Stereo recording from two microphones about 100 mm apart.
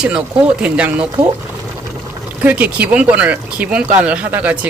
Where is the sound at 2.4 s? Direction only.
15° right (ahead or behind).